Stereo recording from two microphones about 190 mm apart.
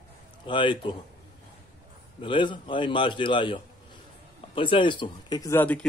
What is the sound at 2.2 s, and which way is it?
A man's voice, 25° left (ahead or behind).